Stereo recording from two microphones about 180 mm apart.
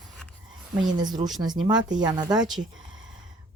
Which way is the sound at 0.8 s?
25° right (ahead or behind).